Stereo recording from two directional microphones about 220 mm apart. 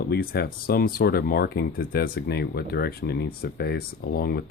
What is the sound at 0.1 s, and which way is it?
Speech, 45° left (ahead or behind).